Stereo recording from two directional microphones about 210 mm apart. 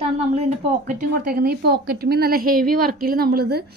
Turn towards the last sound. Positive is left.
turn(degrees=-50)  # may be behind; listen again after turning